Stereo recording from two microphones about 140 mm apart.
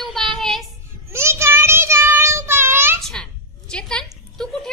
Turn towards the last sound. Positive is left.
turn(degrees=5)  # may be behind; listen again after turning